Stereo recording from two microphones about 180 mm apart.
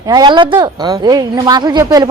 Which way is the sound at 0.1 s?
25° right (ahead or behind).